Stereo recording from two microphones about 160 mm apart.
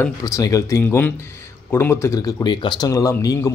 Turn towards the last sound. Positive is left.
turn(degrees=20)  # may be behind; listen again after turning